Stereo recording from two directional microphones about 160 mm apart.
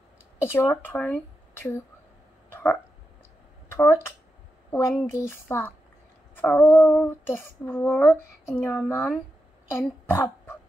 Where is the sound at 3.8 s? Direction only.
15° left (ahead or behind).